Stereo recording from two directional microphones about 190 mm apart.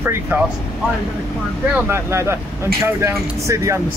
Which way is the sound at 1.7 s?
15° right (ahead or behind).